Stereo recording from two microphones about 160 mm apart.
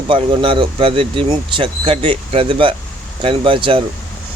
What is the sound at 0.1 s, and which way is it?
Speech, 35° right (ahead or behind).